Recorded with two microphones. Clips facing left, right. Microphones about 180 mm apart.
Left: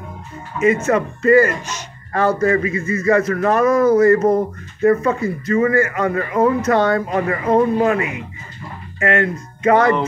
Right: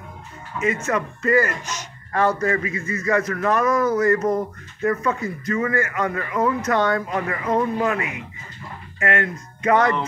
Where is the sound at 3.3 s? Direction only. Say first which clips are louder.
Left 5 dB; 30° left (ahead or behind).